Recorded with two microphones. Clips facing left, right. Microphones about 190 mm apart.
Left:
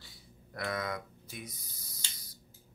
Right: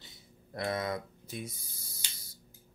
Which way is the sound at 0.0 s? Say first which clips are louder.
Even; 25° right (ahead or behind).